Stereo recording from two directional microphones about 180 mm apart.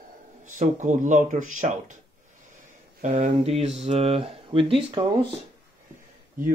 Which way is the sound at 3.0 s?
40° right (ahead or behind).